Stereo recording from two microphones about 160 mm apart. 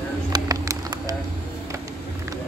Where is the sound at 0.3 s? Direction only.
25° right (ahead or behind).